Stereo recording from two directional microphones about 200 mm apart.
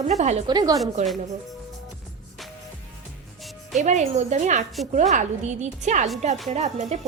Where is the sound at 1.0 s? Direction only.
35° right (ahead or behind).